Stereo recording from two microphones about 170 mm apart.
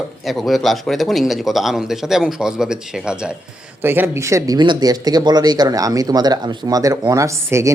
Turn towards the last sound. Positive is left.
turn(degrees=-15)  # may be behind; listen again after turning